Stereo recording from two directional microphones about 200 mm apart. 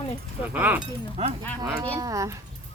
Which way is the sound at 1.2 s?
30° right (ahead or behind).